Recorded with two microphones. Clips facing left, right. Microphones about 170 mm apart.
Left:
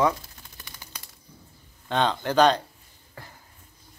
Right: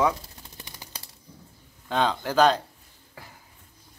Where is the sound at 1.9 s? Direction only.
5° right (ahead or behind).